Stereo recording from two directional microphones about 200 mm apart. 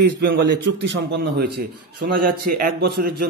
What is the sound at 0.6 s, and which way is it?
A man's voice, 60° right (ahead or behind).